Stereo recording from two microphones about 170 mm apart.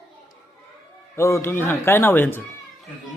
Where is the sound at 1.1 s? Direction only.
15° left (ahead or behind).